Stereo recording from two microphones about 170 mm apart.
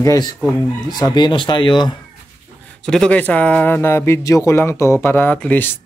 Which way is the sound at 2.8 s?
5° left (ahead or behind).